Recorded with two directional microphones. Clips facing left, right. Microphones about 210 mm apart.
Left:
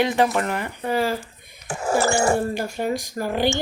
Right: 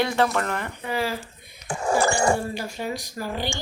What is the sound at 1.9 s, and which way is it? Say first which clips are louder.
Cat: left 1 dB; 15° right (ahead or behind).